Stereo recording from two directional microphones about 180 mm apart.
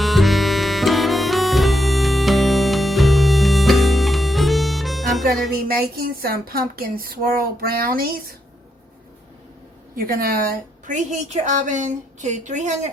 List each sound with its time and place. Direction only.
0.0 s harmonica: centre (ahead or behind)
5.6 s speech: 55° right (ahead or behind)
9.9 s a woman's voice: 55° right (ahead or behind)